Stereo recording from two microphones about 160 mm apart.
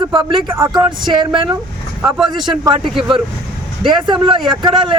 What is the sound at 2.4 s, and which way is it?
A man's voice, 30° right (ahead or behind).